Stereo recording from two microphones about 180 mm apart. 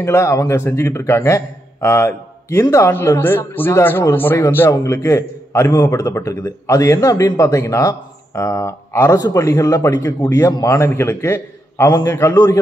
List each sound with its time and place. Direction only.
0.0 s a man's voice: 15° left (ahead or behind)